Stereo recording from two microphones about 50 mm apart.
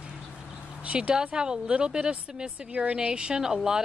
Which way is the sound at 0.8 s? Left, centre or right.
Centre.